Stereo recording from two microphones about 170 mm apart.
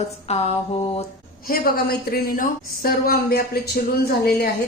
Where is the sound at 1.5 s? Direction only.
60° left (ahead or behind).